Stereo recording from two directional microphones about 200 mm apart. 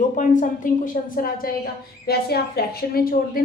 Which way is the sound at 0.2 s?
40° left (ahead or behind).